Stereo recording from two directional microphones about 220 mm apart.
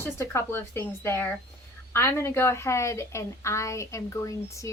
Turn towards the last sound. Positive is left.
turn(degrees=15)  # may be behind; listen again after turning